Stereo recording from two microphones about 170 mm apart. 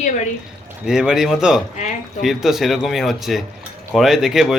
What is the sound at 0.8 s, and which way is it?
Speech, 5° right (ahead or behind).